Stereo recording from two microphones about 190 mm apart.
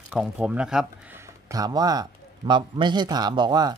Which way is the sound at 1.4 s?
20° right (ahead or behind).